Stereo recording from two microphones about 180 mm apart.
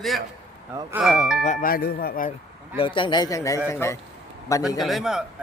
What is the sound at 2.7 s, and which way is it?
A man's voice, 30° left (ahead or behind).